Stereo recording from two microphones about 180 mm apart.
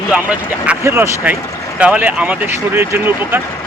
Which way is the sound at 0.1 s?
5° right (ahead or behind).